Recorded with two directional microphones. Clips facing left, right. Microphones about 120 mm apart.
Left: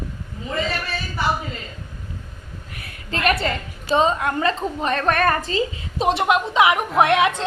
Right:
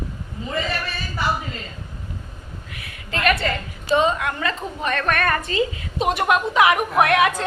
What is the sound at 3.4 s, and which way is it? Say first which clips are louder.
A woman's voice: right 1 dB; 30° left (ahead or behind).